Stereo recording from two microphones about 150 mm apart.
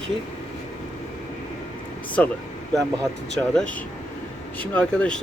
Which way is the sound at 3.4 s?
10° left (ahead or behind).